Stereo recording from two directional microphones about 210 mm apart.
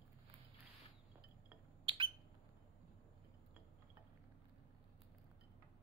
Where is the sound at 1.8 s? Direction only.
25° right (ahead or behind).